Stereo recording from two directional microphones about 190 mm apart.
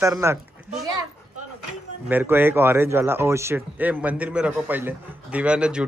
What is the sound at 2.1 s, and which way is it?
Speech, 10° right (ahead or behind).